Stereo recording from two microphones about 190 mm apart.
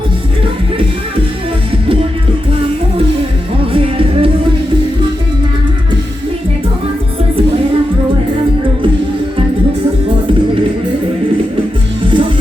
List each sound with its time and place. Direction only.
3.7 s music: 30° right (ahead or behind)
12.0 s music: 25° right (ahead or behind)